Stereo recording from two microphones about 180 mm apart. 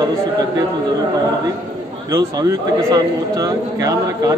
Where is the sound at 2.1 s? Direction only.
20° right (ahead or behind).